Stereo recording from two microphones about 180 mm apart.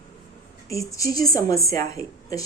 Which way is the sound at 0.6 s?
20° left (ahead or behind).